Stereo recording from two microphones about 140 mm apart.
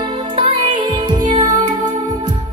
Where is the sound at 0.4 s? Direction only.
40° right (ahead or behind).